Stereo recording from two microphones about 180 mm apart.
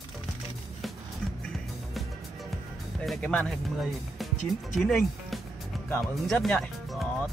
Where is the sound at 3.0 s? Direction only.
Centre (ahead or behind).